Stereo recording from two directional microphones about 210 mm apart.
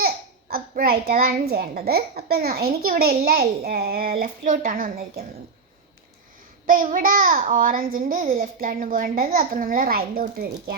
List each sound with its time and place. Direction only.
0.5 s a child's voice: 45° right (ahead or behind)
6.7 s a child's voice: 40° right (ahead or behind)